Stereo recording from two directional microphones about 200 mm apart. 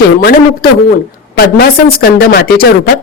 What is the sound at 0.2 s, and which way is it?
Speech, 50° left (ahead or behind).